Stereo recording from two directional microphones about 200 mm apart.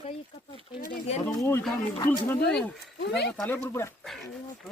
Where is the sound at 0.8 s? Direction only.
45° left (ahead or behind).